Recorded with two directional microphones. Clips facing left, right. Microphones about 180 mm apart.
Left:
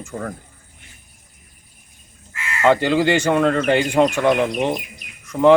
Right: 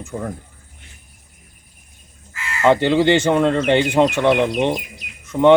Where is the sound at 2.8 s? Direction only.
30° right (ahead or behind).